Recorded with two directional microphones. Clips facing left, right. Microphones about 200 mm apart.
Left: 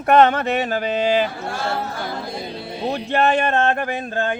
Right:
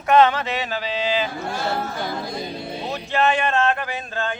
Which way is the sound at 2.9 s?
50° left (ahead or behind).